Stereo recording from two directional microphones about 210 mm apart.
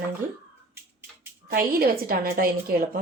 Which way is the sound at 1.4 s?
45° right (ahead or behind).